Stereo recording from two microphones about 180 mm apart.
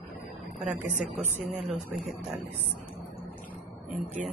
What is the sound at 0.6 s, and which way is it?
A woman's voice, 45° right (ahead or behind).